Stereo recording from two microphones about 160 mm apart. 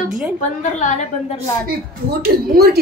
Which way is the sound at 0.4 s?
50° left (ahead or behind).